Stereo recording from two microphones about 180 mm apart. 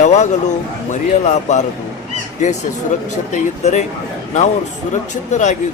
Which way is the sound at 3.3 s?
40° left (ahead or behind).